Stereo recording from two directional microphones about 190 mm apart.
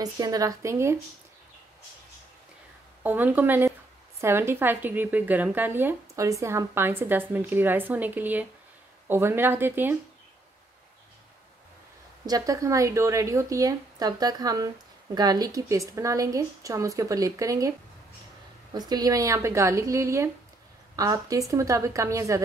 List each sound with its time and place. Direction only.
0.0 s a woman's voice: 20° right (ahead or behind)
3.0 s a woman's voice: 10° right (ahead or behind)
12.3 s a woman's voice: 20° right (ahead or behind)